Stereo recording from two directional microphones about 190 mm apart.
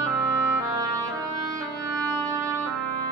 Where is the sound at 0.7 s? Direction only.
15° right (ahead or behind).